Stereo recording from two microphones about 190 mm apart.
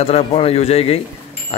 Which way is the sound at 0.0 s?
30° left (ahead or behind).